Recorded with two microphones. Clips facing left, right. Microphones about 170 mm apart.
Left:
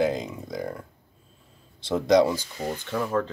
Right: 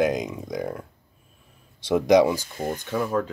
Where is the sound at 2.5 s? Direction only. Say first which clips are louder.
Right 2 dB; 50° right (ahead or behind).